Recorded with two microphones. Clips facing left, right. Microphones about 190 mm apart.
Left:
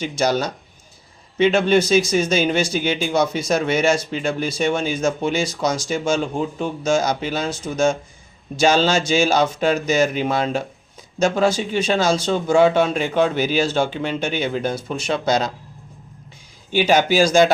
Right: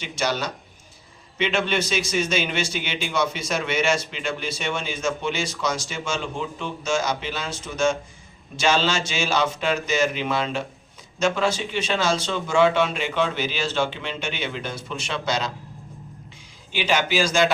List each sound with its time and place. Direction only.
0.0 s speech: 40° left (ahead or behind)
16.7 s speech: 40° left (ahead or behind)